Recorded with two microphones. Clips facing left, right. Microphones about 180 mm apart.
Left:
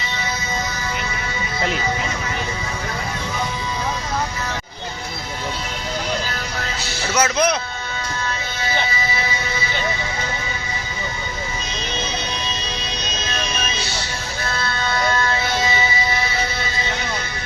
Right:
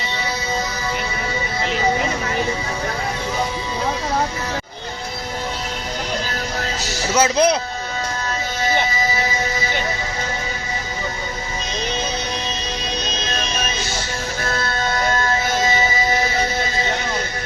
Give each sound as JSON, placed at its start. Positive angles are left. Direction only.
{"t": 7.1, "sound": "speech", "side_deg": -25}
{"t": 14.4, "sound": "music", "side_deg": -45}